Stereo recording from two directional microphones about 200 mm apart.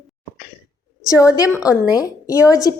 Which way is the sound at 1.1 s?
15° left (ahead or behind).